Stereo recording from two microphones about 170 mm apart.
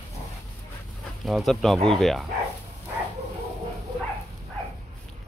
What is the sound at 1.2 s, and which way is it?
Speech, centre (ahead or behind).